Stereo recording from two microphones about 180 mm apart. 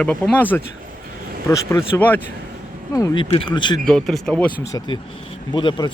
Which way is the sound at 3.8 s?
5° left (ahead or behind).